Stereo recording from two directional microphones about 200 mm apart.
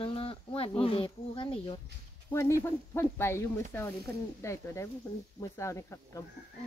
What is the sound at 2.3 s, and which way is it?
Speech, 15° left (ahead or behind).